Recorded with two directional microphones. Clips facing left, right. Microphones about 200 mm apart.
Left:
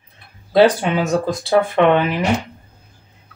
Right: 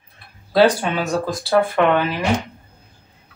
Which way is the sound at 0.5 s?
20° left (ahead or behind).